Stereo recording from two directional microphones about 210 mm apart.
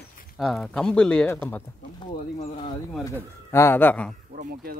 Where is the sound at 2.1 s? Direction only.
30° left (ahead or behind).